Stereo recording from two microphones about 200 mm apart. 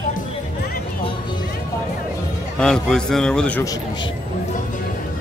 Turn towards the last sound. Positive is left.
turn(degrees=20)  # may be behind; listen again after turning